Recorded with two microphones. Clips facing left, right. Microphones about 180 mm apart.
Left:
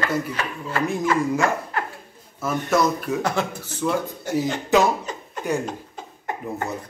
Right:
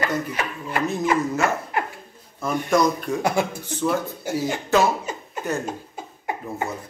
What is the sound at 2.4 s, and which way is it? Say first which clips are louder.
Speech: right 1 dB; 5° left (ahead or behind).